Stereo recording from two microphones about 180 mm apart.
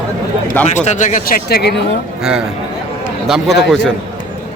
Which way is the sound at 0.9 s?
45° left (ahead or behind).